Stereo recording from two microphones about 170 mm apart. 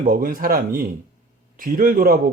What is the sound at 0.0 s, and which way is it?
Speech, 55° right (ahead or behind).